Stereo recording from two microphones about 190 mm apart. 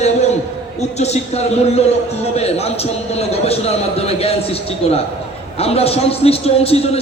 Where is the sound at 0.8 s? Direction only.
35° left (ahead or behind).